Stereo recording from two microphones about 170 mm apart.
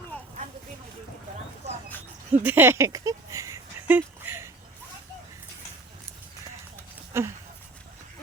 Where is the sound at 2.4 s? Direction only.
10° right (ahead or behind).